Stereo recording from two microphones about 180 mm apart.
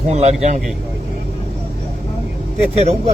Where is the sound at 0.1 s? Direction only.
35° right (ahead or behind).